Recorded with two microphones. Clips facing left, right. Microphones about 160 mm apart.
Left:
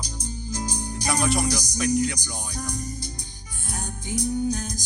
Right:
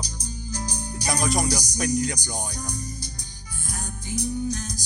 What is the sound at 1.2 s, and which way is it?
Music, 40° right (ahead or behind).